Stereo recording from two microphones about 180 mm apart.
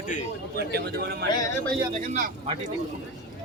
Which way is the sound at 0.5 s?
65° right (ahead or behind).